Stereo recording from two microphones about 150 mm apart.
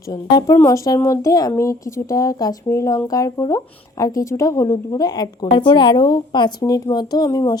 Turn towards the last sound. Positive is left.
turn(degrees=25)  # may be behind; listen again after turning